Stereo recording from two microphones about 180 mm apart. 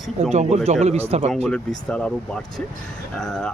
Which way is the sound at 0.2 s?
35° right (ahead or behind).